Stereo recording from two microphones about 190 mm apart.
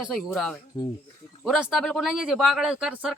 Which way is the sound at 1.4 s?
Centre (ahead or behind).